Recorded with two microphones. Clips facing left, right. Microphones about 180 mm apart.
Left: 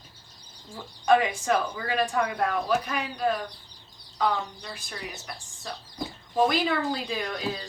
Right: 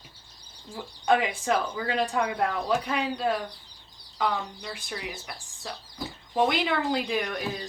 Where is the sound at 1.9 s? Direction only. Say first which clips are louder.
Left 1 dB; 20° right (ahead or behind).